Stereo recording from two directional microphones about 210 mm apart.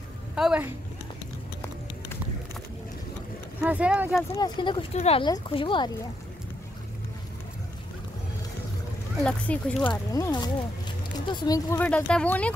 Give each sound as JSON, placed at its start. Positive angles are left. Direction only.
{"t": 0.4, "sound": "speech", "side_deg": -5}
{"t": 3.6, "sound": "speech", "side_deg": -5}
{"t": 4.4, "sound": "speech", "side_deg": 20}
{"t": 9.2, "sound": "speech", "side_deg": 0}
{"t": 9.8, "sound": "speech", "side_deg": 20}